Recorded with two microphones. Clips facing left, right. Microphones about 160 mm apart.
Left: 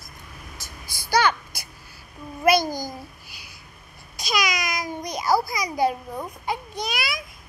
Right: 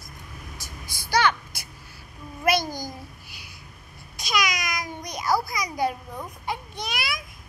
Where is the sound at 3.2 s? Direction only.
50° right (ahead or behind).